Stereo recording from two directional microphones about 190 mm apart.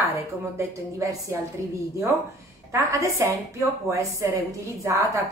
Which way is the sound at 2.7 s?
15° right (ahead or behind).